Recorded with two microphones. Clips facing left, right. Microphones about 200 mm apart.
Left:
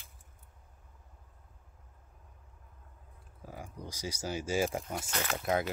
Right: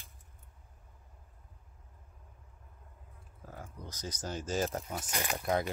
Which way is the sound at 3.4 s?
10° left (ahead or behind).